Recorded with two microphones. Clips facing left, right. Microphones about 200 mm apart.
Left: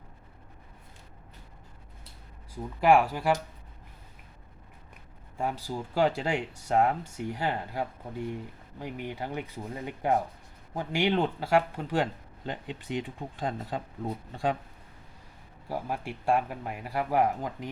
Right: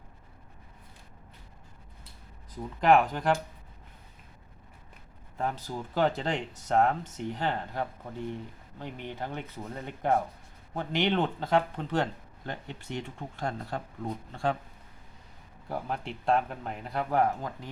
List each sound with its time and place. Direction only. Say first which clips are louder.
2.8 s speech: left 1 dB; 10° left (ahead or behind)
5.4 s speech: left 1 dB; 10° left (ahead or behind)
15.7 s speech: left 1 dB; 10° left (ahead or behind)